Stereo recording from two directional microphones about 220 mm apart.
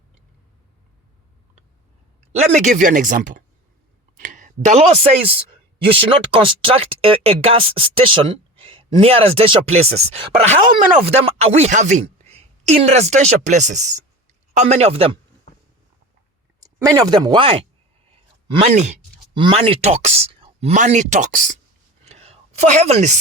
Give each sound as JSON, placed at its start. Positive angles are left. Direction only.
{"t": 2.4, "sound": "speech", "side_deg": -35}
{"t": 4.2, "sound": "a sound", "side_deg": -35}
{"t": 6.1, "sound": "speech", "side_deg": -25}
{"t": 16.6, "sound": "speech", "side_deg": -15}
{"t": 22.0, "sound": "whispering", "side_deg": -30}